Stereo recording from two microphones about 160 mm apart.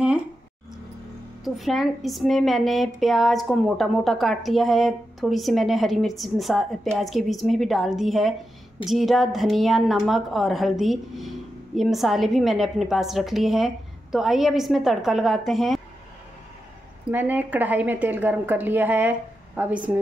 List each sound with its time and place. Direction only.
1.4 s a woman's voice: centre (ahead or behind)
17.1 s a woman's voice: 10° right (ahead or behind)